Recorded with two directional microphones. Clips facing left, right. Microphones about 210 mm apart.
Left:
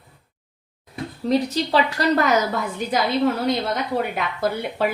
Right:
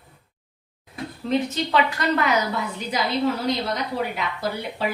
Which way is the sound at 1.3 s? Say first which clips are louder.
Left 3 dB; 35° left (ahead or behind).